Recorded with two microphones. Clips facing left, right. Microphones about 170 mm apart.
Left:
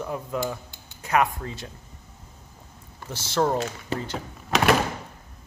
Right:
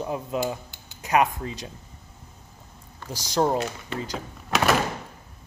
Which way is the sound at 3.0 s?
15° right (ahead or behind).